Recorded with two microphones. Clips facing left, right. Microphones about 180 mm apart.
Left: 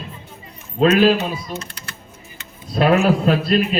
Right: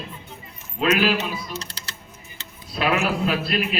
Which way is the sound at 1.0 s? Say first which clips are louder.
Left 7 dB; 35° left (ahead or behind).